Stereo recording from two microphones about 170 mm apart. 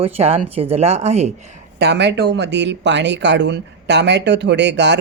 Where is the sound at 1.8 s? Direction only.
85° right.